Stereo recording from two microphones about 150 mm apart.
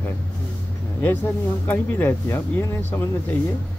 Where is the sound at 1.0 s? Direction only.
10° left (ahead or behind).